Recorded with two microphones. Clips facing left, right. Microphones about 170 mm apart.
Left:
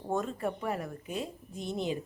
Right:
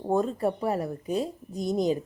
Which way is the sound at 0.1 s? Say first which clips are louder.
Right 7 dB; 35° right (ahead or behind).